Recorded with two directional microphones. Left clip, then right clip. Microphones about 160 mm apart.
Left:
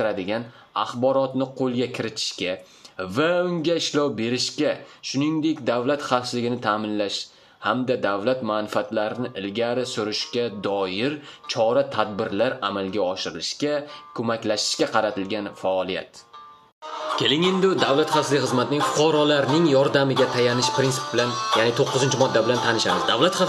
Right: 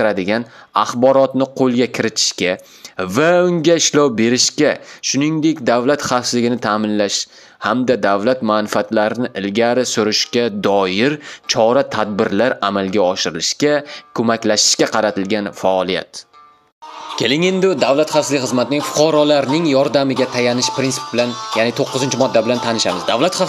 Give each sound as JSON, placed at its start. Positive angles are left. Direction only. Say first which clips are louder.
{"t": 0.0, "sound": "speech", "louder": "right 8 dB", "side_deg": -40}
{"t": 17.2, "sound": "speech", "louder": "right 6 dB", "side_deg": -45}